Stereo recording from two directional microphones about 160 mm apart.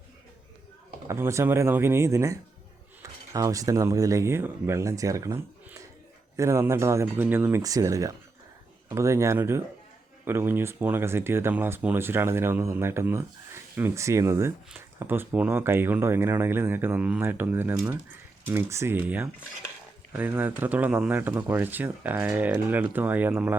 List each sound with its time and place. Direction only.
1.0 s speech: 15° right (ahead or behind)